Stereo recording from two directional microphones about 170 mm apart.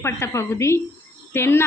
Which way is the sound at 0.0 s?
15° left (ahead or behind).